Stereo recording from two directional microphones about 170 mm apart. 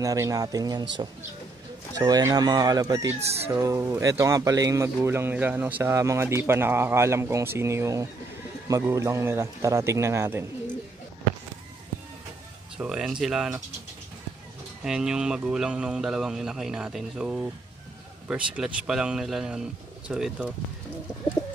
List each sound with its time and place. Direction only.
0.0 s speech: 20° right (ahead or behind)
12.7 s speech: 5° right (ahead or behind)
14.8 s speech: 5° right (ahead or behind)